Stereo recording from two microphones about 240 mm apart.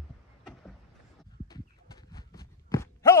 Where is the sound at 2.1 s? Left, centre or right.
Centre.